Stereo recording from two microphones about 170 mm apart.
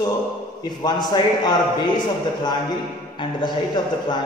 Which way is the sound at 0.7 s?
25° left (ahead or behind).